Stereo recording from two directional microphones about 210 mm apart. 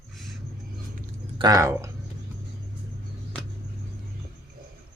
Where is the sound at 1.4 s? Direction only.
15° right (ahead or behind).